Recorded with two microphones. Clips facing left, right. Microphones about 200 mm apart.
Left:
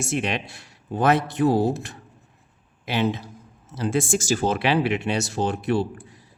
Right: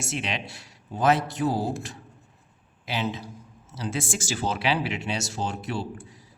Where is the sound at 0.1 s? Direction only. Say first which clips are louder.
Left 5 dB; 50° left (ahead or behind).